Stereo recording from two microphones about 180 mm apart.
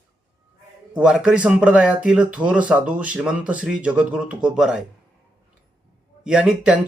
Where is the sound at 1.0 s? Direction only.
5° right (ahead or behind).